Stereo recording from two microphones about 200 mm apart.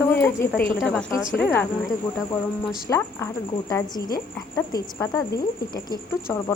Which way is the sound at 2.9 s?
15° left (ahead or behind).